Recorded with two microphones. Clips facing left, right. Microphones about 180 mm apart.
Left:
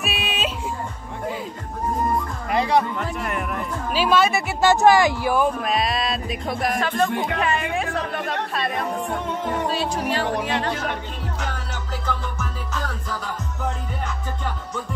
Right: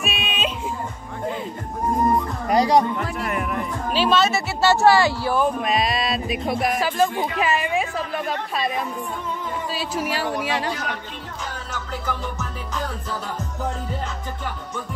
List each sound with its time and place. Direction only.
0.0 s music: 5° left (ahead or behind)
2.4 s music: 35° right (ahead or behind)
3.0 s speech: centre (ahead or behind); by 5.5 s 15° left (ahead or behind)
5.5 s a woman's voice: centre (ahead or behind)
8.7 s music: 70° left (ahead or behind)
9.8 s speech: 5° right (ahead or behind)
12.1 s music: 15° right (ahead or behind)